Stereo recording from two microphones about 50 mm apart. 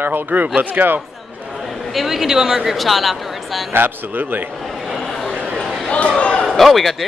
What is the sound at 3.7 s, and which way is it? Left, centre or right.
Speech, right.